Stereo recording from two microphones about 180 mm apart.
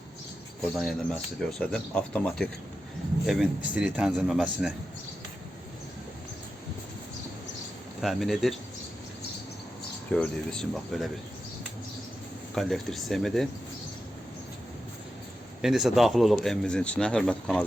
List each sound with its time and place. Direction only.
0.7 s speech: centre (ahead or behind)
8.0 s speech: centre (ahead or behind)
10.1 s speech: 5° left (ahead or behind)
12.5 s speech: centre (ahead or behind)
15.6 s speech: centre (ahead or behind)